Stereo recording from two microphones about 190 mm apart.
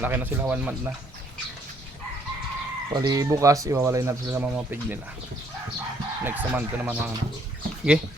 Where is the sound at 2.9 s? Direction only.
20° right (ahead or behind).